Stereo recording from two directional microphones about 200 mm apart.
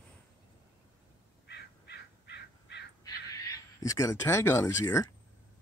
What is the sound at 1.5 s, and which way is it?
Crow, 55° left (ahead or behind).